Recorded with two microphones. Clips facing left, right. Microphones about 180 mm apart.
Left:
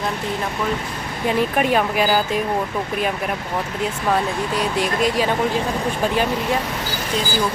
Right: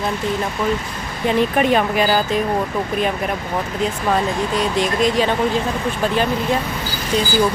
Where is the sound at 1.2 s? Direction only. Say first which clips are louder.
Right 3 dB; 5° left (ahead or behind).